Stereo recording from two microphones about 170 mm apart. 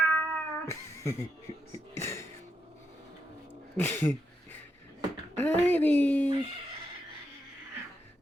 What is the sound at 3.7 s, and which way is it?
Speech, 10° left (ahead or behind).